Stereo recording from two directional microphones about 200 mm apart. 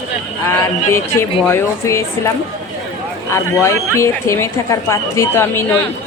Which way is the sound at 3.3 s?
15° left (ahead or behind).